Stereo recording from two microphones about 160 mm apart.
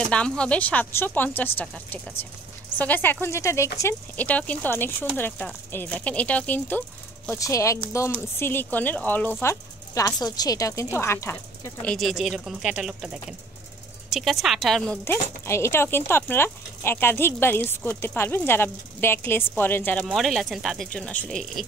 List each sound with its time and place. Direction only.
0.1 s speech: 5° left (ahead or behind)
15.4 s speech: 15° left (ahead or behind)